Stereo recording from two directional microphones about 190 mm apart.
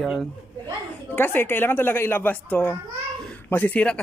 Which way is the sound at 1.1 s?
10° left (ahead or behind).